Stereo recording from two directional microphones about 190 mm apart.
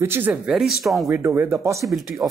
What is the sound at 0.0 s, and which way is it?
Speech, 10° right (ahead or behind).